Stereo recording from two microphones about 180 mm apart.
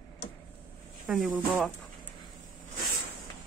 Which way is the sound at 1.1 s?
Centre (ahead or behind).